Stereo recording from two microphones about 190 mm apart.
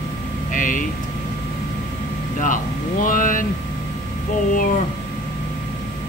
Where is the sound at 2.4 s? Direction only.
45° left (ahead or behind).